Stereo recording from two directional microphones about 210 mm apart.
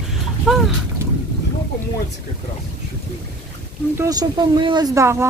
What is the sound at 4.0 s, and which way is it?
Speech, 20° right (ahead or behind).